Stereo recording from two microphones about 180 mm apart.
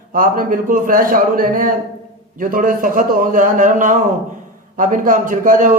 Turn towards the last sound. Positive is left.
turn(degrees=-45)  # may be behind; listen again after turning